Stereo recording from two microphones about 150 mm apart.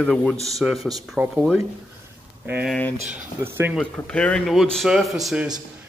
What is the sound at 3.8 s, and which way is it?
Speech, 5° left (ahead or behind).